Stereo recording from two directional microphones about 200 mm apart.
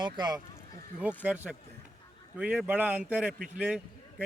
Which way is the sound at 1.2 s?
5° right (ahead or behind).